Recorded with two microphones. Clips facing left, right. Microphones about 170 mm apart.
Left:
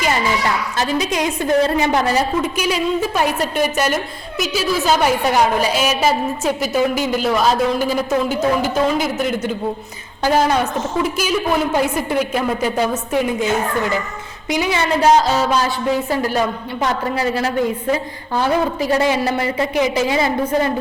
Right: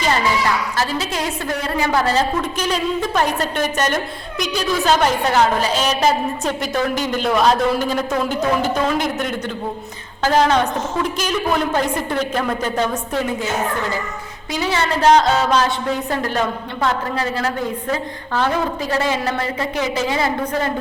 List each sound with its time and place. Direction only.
0.8 s a woman's voice: 20° left (ahead or behind)
14.5 s a woman's voice: 15° left (ahead or behind)